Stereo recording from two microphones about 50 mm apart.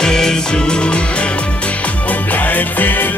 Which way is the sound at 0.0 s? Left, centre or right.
Centre.